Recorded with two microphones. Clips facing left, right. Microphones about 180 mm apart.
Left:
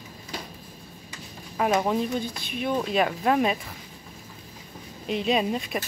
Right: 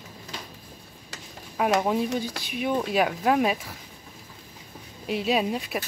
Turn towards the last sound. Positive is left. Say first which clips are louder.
# even
turn(degrees=-5)  # may be behind; listen again after turning